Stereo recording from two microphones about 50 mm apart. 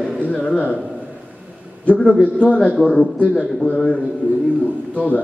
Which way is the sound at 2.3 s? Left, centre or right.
Left.